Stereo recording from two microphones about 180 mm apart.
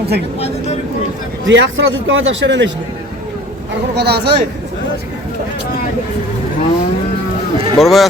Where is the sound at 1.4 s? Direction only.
90° right.